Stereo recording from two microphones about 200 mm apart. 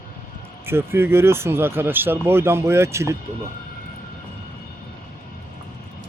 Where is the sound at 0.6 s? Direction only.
10° right (ahead or behind).